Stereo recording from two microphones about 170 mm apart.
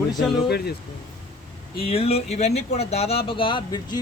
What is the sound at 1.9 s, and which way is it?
Speech, 35° left (ahead or behind).